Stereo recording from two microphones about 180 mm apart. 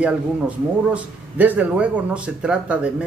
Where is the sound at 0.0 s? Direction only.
5° right (ahead or behind).